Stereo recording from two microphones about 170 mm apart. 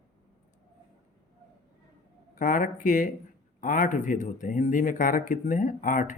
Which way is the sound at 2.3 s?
50° left (ahead or behind).